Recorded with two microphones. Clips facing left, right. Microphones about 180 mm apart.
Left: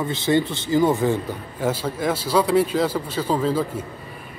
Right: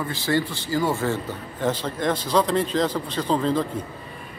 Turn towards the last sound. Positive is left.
turn(degrees=5)  # may be behind; listen again after turning